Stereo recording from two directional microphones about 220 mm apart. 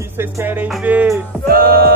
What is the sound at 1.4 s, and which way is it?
Music, 40° right (ahead or behind).